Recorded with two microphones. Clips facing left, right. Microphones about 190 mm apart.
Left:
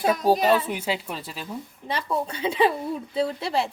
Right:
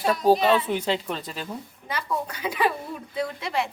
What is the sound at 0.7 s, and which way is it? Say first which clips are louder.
Speech: right 3 dB; 5° left (ahead or behind).